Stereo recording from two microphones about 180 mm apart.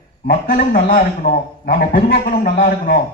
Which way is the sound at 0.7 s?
55° left (ahead or behind).